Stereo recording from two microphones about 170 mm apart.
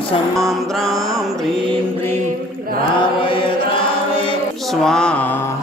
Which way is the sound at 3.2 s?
30° left (ahead or behind).